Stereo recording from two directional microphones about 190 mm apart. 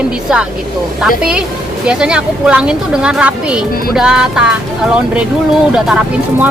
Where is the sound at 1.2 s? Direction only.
5° right (ahead or behind).